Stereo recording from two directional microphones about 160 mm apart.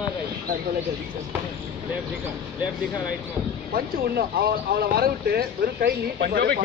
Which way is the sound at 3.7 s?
75° right (ahead or behind).